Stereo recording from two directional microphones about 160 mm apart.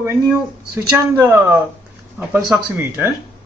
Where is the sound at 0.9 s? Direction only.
15° right (ahead or behind).